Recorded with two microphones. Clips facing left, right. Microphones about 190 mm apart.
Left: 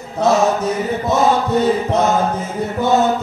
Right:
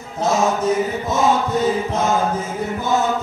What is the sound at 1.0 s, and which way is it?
Chant, 65° left (ahead or behind).